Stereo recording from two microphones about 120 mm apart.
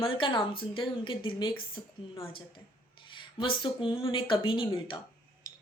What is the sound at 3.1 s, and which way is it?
A woman's voice, 40° left (ahead or behind).